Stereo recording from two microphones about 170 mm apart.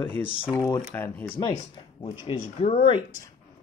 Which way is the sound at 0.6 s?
20° left (ahead or behind).